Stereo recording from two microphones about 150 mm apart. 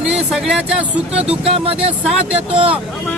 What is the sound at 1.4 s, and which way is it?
Speech, 40° right (ahead or behind).